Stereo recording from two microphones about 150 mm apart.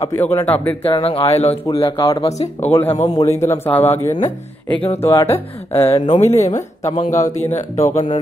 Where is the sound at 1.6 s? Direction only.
30° left (ahead or behind).